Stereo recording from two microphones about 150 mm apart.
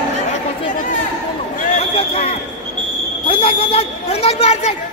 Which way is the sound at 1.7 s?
45° left (ahead or behind).